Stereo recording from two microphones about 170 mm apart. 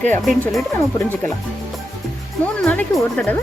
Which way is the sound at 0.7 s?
15° left (ahead or behind).